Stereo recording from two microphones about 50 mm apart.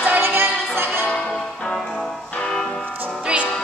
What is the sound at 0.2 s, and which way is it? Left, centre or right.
Music, right.